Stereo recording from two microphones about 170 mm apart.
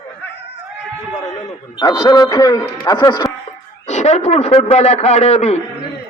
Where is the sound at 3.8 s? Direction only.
40° left (ahead or behind).